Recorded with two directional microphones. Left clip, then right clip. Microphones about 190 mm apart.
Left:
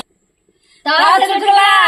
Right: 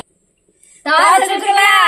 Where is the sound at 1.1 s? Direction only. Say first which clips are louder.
Left 1 dB; 15° right (ahead or behind).